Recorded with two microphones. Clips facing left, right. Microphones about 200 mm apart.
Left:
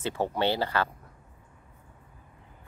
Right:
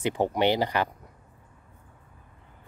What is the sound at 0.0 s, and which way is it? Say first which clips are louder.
Speech: right 4 dB; 15° right (ahead or behind).